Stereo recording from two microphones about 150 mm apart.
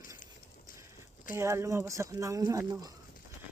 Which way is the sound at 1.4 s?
20° right (ahead or behind).